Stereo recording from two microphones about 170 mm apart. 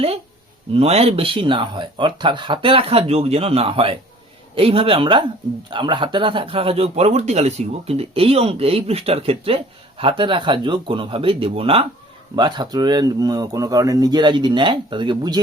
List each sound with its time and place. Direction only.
0.7 s speech: 35° right (ahead or behind)